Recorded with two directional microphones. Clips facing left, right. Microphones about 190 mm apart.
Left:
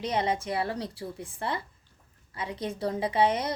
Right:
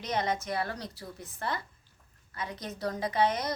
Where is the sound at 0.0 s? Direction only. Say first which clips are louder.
Left 3 dB; 30° left (ahead or behind).